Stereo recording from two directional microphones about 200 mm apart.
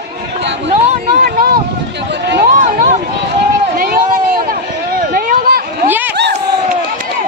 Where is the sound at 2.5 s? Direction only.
40° right (ahead or behind).